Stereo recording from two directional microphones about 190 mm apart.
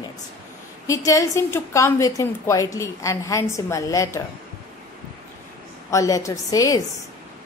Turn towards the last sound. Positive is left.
turn(degrees=20)  # may be behind; listen again after turning